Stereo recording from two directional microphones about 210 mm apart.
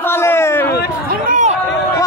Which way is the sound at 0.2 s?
10° left (ahead or behind).